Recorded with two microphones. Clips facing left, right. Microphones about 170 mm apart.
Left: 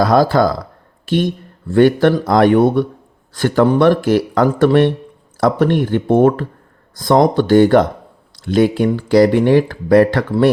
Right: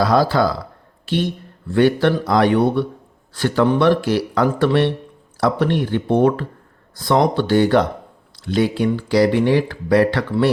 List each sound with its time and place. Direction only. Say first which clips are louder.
0.0 s speech: left 3 dB; 45° left (ahead or behind)